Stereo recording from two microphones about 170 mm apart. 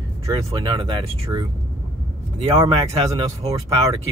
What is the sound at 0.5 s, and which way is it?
Speech, 30° right (ahead or behind).